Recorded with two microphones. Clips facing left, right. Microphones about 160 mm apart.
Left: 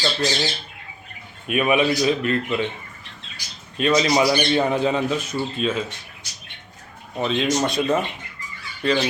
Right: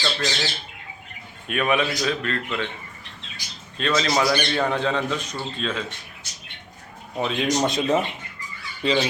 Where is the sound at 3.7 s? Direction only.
10° left (ahead or behind).